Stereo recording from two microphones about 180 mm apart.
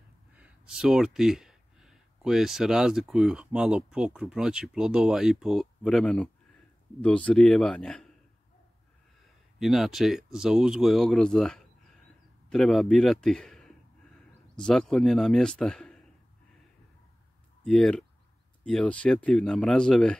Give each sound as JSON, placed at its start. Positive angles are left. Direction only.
{"t": 0.4, "sound": "speech", "side_deg": -5}
{"t": 9.6, "sound": "speech", "side_deg": 0}
{"t": 17.6, "sound": "speech", "side_deg": 5}